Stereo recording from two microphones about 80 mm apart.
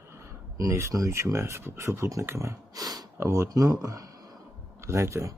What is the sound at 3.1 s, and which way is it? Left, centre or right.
Speech, right.